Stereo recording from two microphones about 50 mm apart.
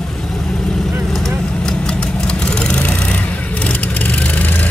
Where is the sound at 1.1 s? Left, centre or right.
Centre.